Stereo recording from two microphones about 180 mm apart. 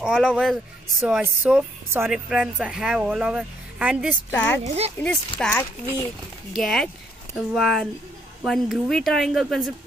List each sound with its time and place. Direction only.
0.0 s a woman's voice: 5° right (ahead or behind)
4.3 s speech: 10° left (ahead or behind)
4.6 s speech: 35° right (ahead or behind)
5.4 s speech: 10° left (ahead or behind)